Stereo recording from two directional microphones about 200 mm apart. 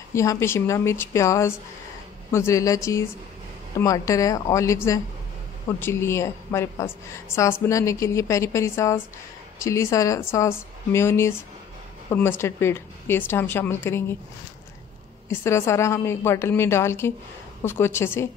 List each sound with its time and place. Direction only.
0.1 s a woman's voice: 15° left (ahead or behind)
5.8 s a woman's voice: 10° left (ahead or behind)
15.2 s a woman's voice: 15° left (ahead or behind)